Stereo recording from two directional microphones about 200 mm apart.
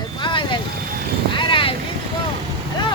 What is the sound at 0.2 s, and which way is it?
Vehicle, 25° left (ahead or behind).